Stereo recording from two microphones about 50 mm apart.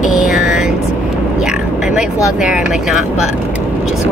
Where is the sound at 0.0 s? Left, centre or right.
Centre.